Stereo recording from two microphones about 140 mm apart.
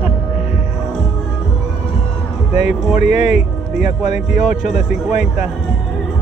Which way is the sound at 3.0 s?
55° left (ahead or behind).